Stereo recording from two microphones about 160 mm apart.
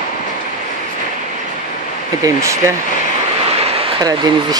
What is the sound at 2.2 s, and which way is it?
Speech, 20° right (ahead or behind).